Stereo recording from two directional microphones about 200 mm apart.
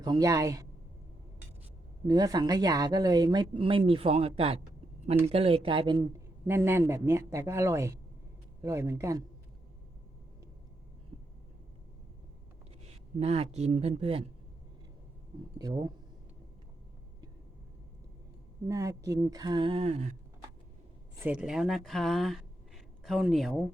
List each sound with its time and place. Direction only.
0.0 s speech: 20° right (ahead or behind)
2.0 s speech: 20° right (ahead or behind)
6.5 s speech: 10° right (ahead or behind)
13.1 s speech: 30° right (ahead or behind)
18.7 s speech: 15° right (ahead or behind); by 20.1 s 35° right (ahead or behind)
21.2 s speech: 5° right (ahead or behind)